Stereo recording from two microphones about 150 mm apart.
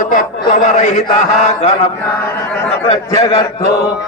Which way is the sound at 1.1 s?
50° left (ahead or behind).